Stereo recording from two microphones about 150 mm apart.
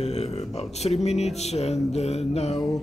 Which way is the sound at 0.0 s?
45° left (ahead or behind).